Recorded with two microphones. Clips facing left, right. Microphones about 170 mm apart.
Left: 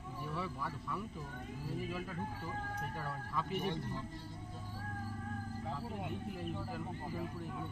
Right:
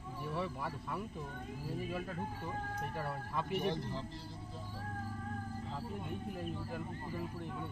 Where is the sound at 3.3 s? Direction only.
60° right (ahead or behind).